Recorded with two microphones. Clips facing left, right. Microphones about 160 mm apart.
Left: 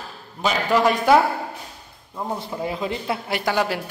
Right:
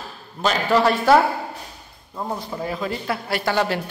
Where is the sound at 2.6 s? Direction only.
20° left (ahead or behind).